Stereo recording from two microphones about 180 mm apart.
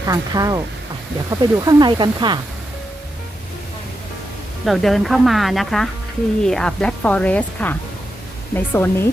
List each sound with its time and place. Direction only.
0.1 s speech: 20° right (ahead or behind)
4.6 s a woman's voice: centre (ahead or behind)